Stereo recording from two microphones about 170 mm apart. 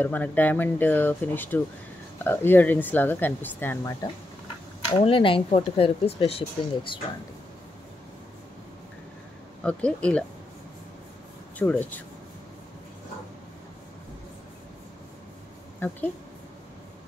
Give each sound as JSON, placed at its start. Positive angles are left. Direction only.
{"t": 0.0, "sound": "speech", "side_deg": 10}
{"t": 4.8, "sound": "speech", "side_deg": 30}
{"t": 9.6, "sound": "speech", "side_deg": 5}
{"t": 11.5, "sound": "speech", "side_deg": 10}